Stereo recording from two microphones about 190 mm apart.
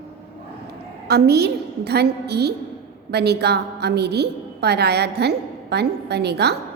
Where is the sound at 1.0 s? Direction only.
60° right (ahead or behind).